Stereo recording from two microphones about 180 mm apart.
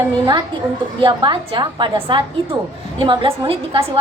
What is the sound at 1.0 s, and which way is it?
A woman's voice, 25° right (ahead or behind).